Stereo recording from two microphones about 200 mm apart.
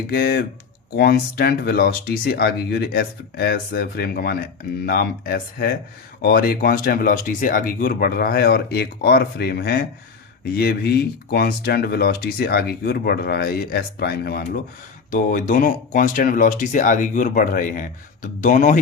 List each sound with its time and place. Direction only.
0.1 s speech: 50° left (ahead or behind)